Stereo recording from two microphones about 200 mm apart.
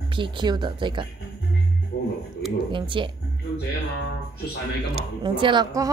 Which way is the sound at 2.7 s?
25° right (ahead or behind).